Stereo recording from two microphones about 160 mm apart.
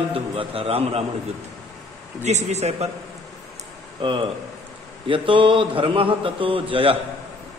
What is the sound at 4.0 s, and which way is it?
A man's voice, 30° right (ahead or behind).